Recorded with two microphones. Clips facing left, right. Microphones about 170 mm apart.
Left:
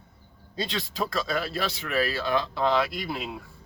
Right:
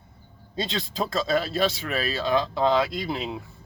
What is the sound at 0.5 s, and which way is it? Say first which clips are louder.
Speech: right 2 dB; 25° right (ahead or behind).